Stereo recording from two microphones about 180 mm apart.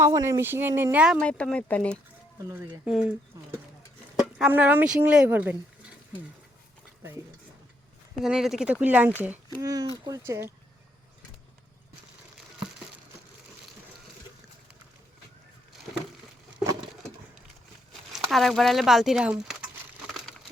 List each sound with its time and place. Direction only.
0.0 s speech: 15° right (ahead or behind)
1.2 s speech: 5° left (ahead or behind)
2.5 s speech: 10° right (ahead or behind)
8.2 s speech: centre (ahead or behind)
18.1 s speech: centre (ahead or behind)